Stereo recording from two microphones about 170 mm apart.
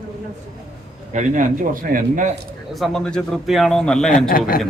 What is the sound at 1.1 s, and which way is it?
Speech, 45° right (ahead or behind).